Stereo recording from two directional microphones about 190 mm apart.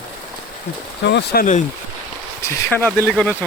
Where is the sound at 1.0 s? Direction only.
60° left (ahead or behind).